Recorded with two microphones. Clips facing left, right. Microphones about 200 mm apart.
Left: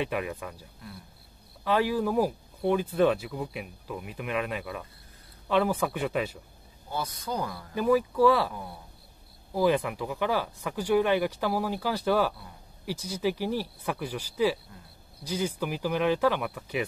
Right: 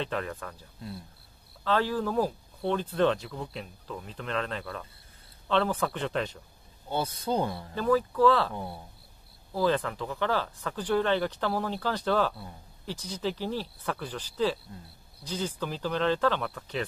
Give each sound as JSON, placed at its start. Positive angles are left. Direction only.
{"t": 0.0, "sound": "speech", "side_deg": 10}
{"t": 6.9, "sound": "speech", "side_deg": -30}
{"t": 7.7, "sound": "speech", "side_deg": 10}